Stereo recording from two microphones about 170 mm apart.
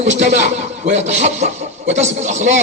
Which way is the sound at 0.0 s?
45° right (ahead or behind).